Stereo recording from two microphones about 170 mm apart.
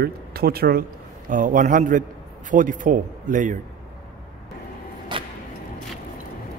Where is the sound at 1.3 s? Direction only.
50° right (ahead or behind).